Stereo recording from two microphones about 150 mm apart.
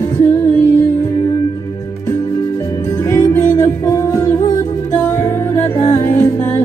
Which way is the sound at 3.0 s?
20° left (ahead or behind).